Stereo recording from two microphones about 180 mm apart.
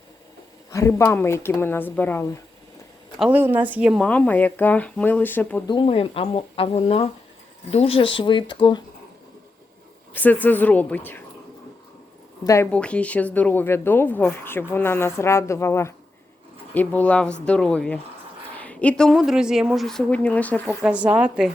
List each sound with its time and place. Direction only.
0.7 s speech: 15° left (ahead or behind)
3.2 s speech: 10° right (ahead or behind)
4.0 s speech: 10° left (ahead or behind)
5.6 s speech: 30° left (ahead or behind)
10.2 s speech: 10° left (ahead or behind)
12.7 s a woman's voice: 5° left (ahead or behind)
20.8 s speech: 5° right (ahead or behind)